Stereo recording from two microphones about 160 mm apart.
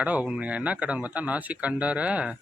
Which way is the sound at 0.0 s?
10° right (ahead or behind).